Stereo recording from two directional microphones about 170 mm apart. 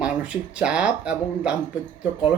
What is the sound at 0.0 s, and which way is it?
A woman's voice, 5° right (ahead or behind).